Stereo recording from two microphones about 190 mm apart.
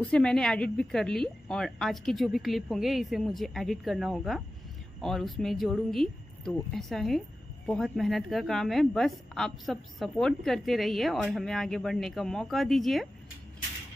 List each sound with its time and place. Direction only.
0.0 s speech: 5° left (ahead or behind)